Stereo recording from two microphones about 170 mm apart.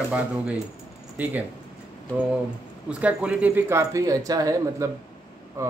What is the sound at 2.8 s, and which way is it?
Speech, 5° right (ahead or behind).